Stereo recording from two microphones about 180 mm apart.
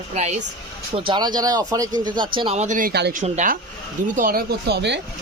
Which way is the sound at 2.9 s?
65° right (ahead or behind).